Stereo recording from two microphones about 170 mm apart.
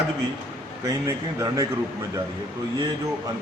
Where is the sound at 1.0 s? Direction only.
20° right (ahead or behind).